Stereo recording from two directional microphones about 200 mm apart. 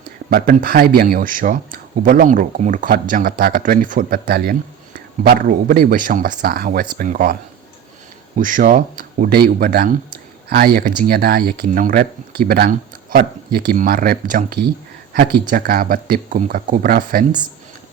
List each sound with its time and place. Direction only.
0.3 s speech: 50° right (ahead or behind)
8.4 s speech: 40° right (ahead or behind)